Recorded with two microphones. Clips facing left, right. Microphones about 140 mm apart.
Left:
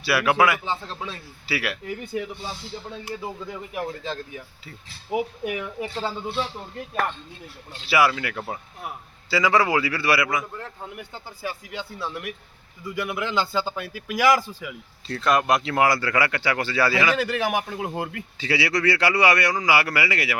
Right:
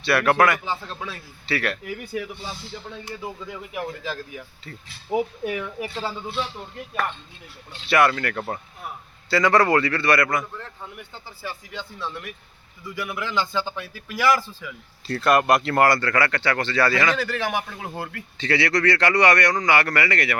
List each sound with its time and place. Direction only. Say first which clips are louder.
0.0 s speech: right 1 dB; 5° left (ahead or behind)
0.6 s speech: even; 20° left (ahead or behind)
1.5 s speech: right 2 dB; 5° left (ahead or behind)
1.8 s speech: left 1 dB; 25° left (ahead or behind)
3.0 s speech: left 1 dB; 5° left (ahead or behind)
4.0 s speech: even; 25° left (ahead or behind)
7.9 s speech: right 1 dB; 5° left (ahead or behind)
13.1 s speech: even; 20° left (ahead or behind)
15.0 s speech: right 2 dB; centre (ahead or behind)